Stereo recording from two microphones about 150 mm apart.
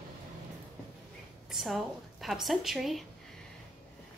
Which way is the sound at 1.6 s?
Centre (ahead or behind).